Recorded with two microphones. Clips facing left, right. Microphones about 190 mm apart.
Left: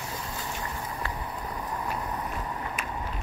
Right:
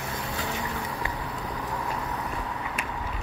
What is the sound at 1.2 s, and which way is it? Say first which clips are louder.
Vehicle: right 2 dB; 80° right.